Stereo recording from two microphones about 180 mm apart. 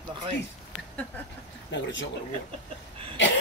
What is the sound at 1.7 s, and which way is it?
Speech, 90° left.